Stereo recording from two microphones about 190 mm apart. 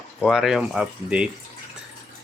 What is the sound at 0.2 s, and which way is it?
Speech, centre (ahead or behind).